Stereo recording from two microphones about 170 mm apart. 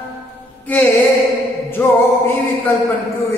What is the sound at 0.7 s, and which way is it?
Music, 10° left (ahead or behind).